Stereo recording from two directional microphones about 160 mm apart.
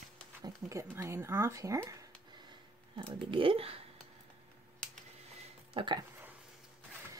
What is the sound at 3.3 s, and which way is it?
Speech, 35° right (ahead or behind).